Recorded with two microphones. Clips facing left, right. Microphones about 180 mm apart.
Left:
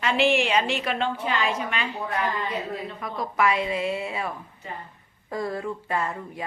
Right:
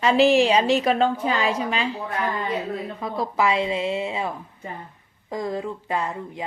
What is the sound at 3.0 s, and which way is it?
A woman's voice, 25° right (ahead or behind).